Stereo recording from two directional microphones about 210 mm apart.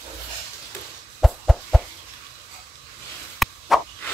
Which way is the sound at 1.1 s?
Centre (ahead or behind).